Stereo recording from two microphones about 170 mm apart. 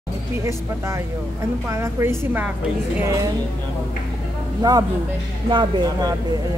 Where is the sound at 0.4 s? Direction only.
15° right (ahead or behind).